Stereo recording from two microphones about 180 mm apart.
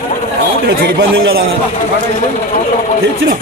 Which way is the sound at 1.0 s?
80° right.